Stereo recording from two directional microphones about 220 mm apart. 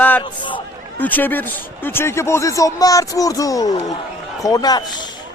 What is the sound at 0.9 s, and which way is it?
Speech, 10° left (ahead or behind).